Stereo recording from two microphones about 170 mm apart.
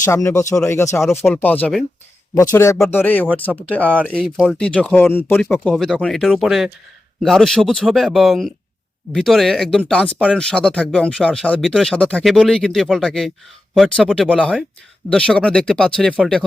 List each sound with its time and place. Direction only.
0.0 s speech: 15° left (ahead or behind)